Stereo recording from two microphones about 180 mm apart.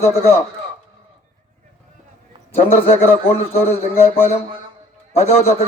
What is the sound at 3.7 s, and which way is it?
Speech, 35° left (ahead or behind).